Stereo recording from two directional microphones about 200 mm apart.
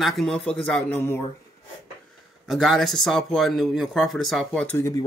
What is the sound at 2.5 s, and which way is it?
Speech, centre (ahead or behind).